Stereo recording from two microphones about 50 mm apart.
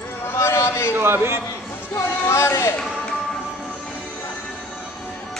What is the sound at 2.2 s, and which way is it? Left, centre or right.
Speech, left.